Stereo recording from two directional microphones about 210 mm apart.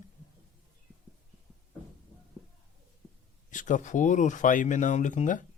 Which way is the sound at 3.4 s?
40° left (ahead or behind).